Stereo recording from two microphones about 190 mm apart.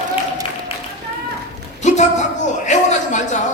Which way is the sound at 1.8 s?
40° left (ahead or behind).